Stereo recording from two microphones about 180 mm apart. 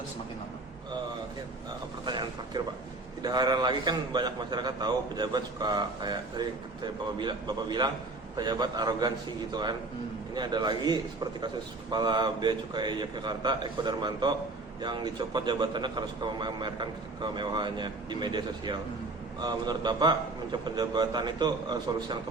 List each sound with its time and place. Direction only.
2.0 s a man's voice: 25° right (ahead or behind)